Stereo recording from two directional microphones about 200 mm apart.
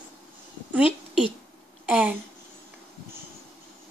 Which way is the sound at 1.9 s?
5° right (ahead or behind).